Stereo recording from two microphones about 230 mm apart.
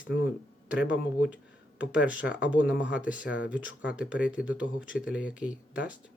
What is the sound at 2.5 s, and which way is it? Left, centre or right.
Speech, centre.